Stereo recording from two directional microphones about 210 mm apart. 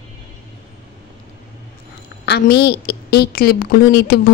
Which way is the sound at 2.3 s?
50° left (ahead or behind).